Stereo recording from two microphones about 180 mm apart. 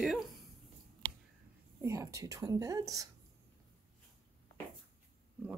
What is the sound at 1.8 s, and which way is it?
A woman's voice, 15° right (ahead or behind).